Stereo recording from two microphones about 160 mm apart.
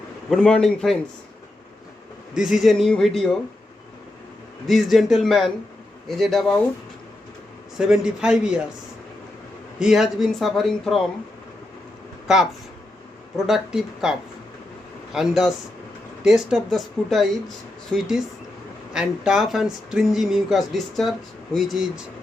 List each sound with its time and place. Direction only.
0.3 s speech: 5° left (ahead or behind)
2.3 s speech: 5° right (ahead or behind)
4.6 s speech: centre (ahead or behind)
7.8 s speech: 5° right (ahead or behind)
9.7 s speech: 5° right (ahead or behind)
13.3 s speech: 5° right (ahead or behind)